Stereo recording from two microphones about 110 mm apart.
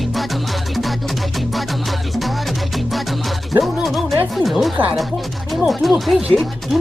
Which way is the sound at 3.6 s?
Centre (ahead or behind).